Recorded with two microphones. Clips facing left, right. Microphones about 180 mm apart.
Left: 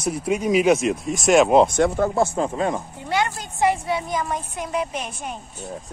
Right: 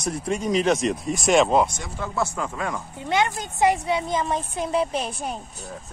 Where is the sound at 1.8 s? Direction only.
60° left (ahead or behind).